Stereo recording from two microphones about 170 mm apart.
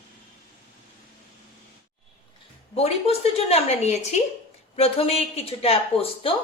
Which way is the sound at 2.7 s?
35° left (ahead or behind).